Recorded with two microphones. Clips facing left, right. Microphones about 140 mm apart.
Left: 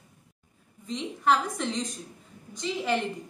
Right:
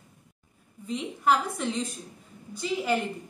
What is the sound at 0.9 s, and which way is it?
A woman's voice, 10° right (ahead or behind).